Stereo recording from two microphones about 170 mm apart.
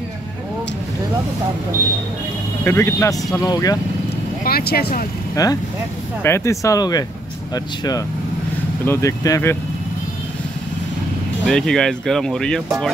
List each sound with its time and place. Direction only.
2.6 s speech: 15° left (ahead or behind)
4.5 s speech: 65° left (ahead or behind)
5.3 s speech: 20° left (ahead or behind)
11.4 s speech: 5° left (ahead or behind)